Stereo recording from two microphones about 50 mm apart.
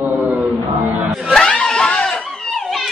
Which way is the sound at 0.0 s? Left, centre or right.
Right.